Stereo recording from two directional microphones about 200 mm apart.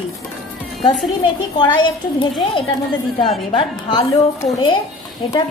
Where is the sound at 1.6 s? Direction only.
25° left (ahead or behind).